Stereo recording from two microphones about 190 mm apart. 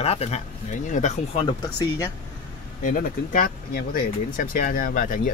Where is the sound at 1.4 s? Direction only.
20° left (ahead or behind).